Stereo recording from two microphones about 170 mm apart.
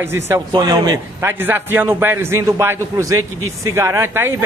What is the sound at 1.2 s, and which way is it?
A man's voice, 10° right (ahead or behind).